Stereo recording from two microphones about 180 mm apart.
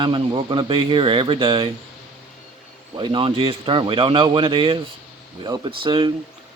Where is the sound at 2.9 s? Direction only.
25° right (ahead or behind).